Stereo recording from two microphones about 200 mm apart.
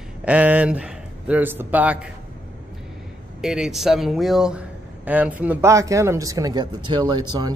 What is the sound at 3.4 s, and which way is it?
Speech, 5° right (ahead or behind).